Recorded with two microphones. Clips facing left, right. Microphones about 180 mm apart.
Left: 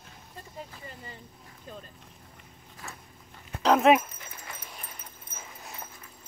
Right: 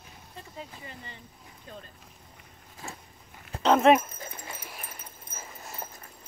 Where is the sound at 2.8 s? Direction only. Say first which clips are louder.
Right 3 dB; 25° right (ahead or behind).